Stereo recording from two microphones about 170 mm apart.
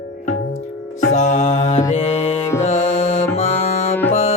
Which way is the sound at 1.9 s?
40° left (ahead or behind).